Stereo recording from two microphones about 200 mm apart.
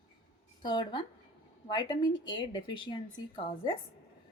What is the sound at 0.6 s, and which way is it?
Speech, 25° left (ahead or behind).